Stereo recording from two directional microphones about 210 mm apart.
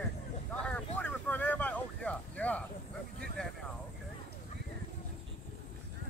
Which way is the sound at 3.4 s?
5° left (ahead or behind).